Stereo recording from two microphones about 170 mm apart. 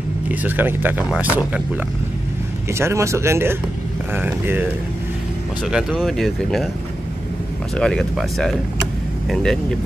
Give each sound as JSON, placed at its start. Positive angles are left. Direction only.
{"t": 0.3, "sound": "speech", "side_deg": -10}
{"t": 7.7, "sound": "speech", "side_deg": 5}